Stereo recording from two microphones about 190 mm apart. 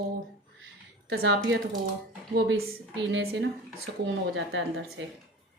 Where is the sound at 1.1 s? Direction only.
70° right (ahead or behind).